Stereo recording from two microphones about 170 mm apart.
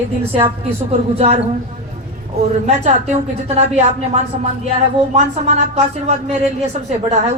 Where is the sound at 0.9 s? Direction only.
35° right (ahead or behind).